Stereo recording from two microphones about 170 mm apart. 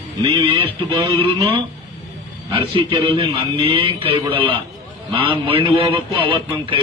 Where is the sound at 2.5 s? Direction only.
30° right (ahead or behind).